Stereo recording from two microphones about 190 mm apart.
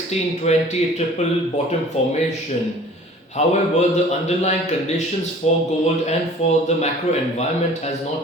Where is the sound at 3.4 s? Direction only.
35° left (ahead or behind).